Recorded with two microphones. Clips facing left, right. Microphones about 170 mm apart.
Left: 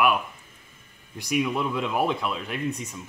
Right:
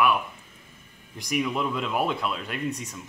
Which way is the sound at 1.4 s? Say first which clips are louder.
Left 1 dB; 10° left (ahead or behind).